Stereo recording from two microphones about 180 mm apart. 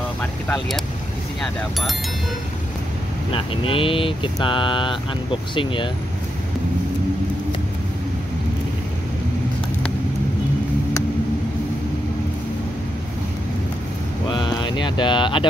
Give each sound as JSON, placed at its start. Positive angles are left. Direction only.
{"t": 0.2, "sound": "vehicle", "side_deg": 5}
{"t": 1.4, "sound": "speech", "side_deg": 0}
{"t": 3.3, "sound": "speech", "side_deg": 30}
{"t": 14.3, "sound": "speech", "side_deg": 25}